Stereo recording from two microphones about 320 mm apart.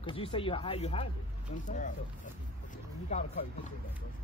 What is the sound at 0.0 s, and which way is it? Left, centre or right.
Speech, centre.